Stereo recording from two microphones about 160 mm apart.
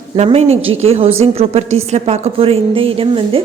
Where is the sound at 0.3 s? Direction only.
40° right (ahead or behind).